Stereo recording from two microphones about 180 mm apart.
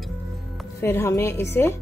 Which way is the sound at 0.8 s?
15° left (ahead or behind).